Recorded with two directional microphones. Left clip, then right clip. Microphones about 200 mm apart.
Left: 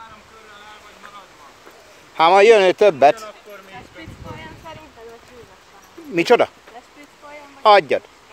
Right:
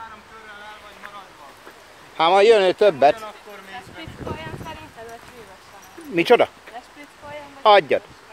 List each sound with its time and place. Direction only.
2.1 s speech: 30° left (ahead or behind)
6.1 s speech: 15° left (ahead or behind)
7.6 s speech: 15° left (ahead or behind)